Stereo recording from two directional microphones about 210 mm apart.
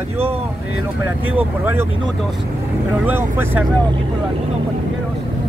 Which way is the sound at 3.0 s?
10° right (ahead or behind).